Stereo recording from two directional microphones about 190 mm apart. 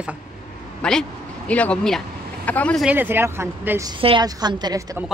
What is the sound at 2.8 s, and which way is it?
Speech, 10° right (ahead or behind).